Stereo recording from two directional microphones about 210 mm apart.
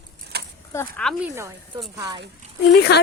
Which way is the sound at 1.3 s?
15° right (ahead or behind).